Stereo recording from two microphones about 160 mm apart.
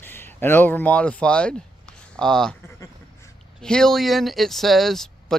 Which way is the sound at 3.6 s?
5° left (ahead or behind).